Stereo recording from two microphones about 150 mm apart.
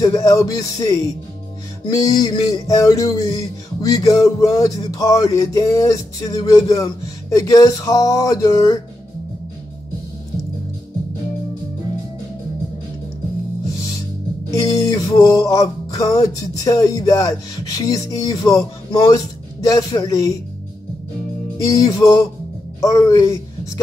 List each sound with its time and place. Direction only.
0.0 s music: 25° left (ahead or behind)
14.5 s music: 25° left (ahead or behind)
21.5 s music: 25° left (ahead or behind)
22.8 s a woman's voice: 20° left (ahead or behind)